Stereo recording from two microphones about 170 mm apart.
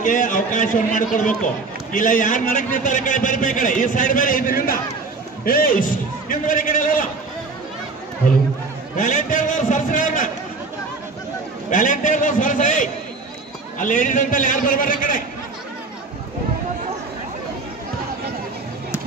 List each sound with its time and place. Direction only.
0.0 s a man's voice: 50° left (ahead or behind)
8.9 s a man's voice: 50° left (ahead or behind)
11.7 s a man's voice: 50° left (ahead or behind)